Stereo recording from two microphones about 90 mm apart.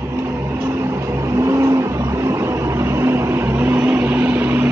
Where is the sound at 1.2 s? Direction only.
35° right (ahead or behind).